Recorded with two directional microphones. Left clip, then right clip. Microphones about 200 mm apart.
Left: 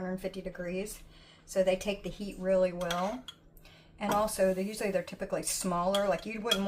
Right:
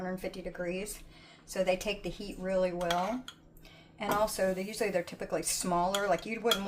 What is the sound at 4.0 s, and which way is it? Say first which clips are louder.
Speech: left 1 dB; 35° right (ahead or behind).